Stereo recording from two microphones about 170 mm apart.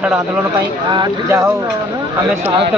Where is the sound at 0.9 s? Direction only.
20° right (ahead or behind).